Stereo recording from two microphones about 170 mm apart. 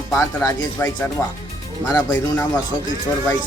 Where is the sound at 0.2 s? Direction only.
15° left (ahead or behind).